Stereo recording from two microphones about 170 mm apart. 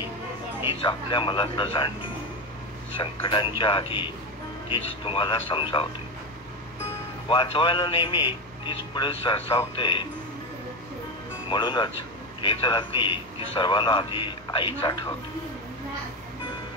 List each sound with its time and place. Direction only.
0.8 s a man's voice: 30° left (ahead or behind)
3.0 s a man's voice: 30° left (ahead or behind)
7.2 s a man's voice: 30° left (ahead or behind)
11.5 s a man's voice: 25° left (ahead or behind)